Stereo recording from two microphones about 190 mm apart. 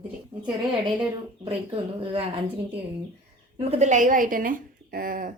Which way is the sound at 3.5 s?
35° right (ahead or behind).